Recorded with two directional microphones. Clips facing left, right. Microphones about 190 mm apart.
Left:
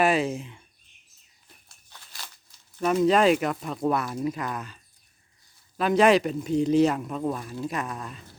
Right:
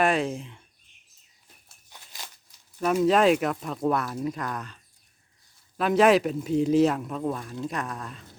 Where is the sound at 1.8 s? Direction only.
15° right (ahead or behind).